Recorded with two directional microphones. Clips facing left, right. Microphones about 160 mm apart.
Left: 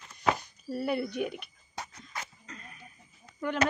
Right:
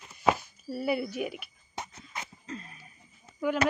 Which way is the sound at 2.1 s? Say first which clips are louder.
Right 3 dB; 25° right (ahead or behind).